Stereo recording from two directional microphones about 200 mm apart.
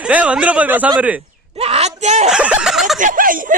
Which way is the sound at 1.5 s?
30° right (ahead or behind).